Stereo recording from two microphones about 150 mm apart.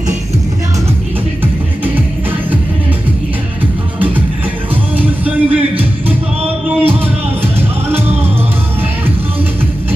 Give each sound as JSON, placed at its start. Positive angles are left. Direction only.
{"t": 4.9, "sound": "music", "side_deg": -10}
{"t": 6.0, "sound": "music", "side_deg": -40}